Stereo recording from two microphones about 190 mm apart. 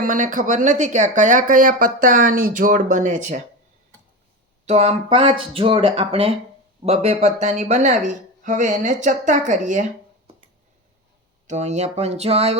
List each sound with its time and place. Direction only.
0.0 s speech: 45° right (ahead or behind)
4.6 s speech: 35° right (ahead or behind)
11.4 s speech: 35° right (ahead or behind)